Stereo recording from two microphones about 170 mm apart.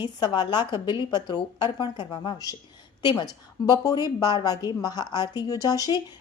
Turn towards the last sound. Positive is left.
turn(degrees=20)  # may be behind; listen again after turning